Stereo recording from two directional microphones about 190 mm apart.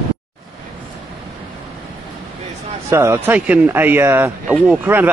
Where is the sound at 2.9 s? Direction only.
15° right (ahead or behind).